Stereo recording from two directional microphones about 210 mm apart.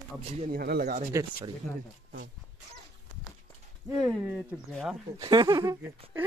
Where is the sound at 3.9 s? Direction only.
Centre (ahead or behind).